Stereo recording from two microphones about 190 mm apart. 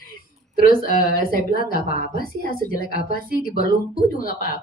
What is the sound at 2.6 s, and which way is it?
Speech, 55° right (ahead or behind).